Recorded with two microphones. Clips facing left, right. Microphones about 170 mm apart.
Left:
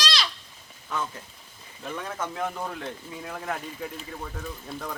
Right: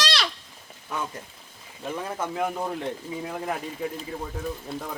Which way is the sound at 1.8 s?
10° right (ahead or behind).